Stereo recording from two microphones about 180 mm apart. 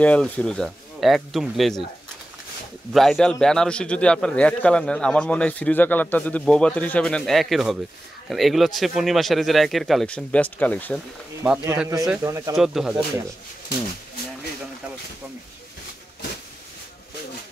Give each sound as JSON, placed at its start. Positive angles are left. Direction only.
{"t": 0.0, "sound": "a man's voice", "side_deg": 5}
{"t": 2.9, "sound": "a man's voice", "side_deg": 0}
{"t": 11.4, "sound": "a man's voice", "side_deg": -10}
{"t": 12.5, "sound": "a man's voice", "side_deg": 0}